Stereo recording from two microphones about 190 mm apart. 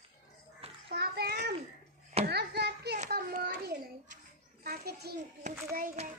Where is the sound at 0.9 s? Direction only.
60° right (ahead or behind).